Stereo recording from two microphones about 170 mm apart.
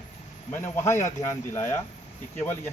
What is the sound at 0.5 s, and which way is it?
Speech, 15° left (ahead or behind).